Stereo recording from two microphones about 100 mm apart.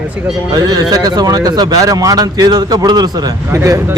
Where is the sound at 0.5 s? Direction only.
40° right (ahead or behind).